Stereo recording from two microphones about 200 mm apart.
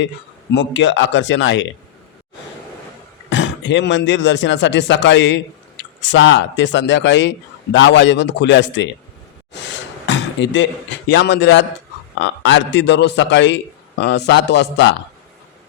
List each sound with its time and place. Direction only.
0.5 s speech: 65° left (ahead or behind)
3.2 s speech: 65° left (ahead or behind)
9.5 s a sound: 65° left (ahead or behind)
12.2 s speech: 65° left (ahead or behind)